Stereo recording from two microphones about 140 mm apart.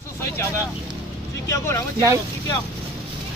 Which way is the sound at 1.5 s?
20° left (ahead or behind).